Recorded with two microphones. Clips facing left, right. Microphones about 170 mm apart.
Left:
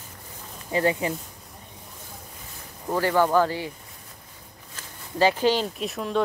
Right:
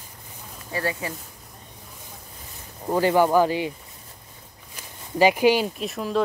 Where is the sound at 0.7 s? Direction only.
20° left (ahead or behind).